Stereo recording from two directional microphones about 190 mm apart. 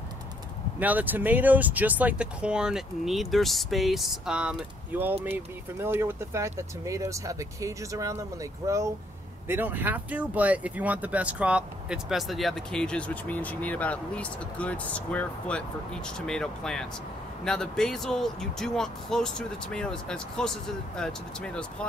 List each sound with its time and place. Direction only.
0.7 s speech: 10° right (ahead or behind)